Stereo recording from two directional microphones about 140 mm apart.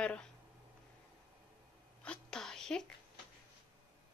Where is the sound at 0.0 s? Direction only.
10° left (ahead or behind).